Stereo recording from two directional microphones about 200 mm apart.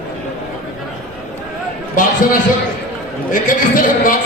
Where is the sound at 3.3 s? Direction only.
45° left (ahead or behind).